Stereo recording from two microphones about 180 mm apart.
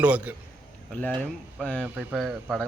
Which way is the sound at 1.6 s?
5° left (ahead or behind).